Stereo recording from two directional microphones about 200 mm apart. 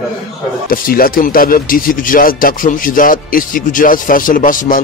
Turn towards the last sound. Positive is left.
turn(degrees=45)  # may be behind; listen again after turning